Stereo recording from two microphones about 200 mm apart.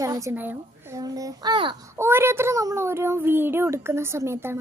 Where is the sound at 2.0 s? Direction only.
10° right (ahead or behind).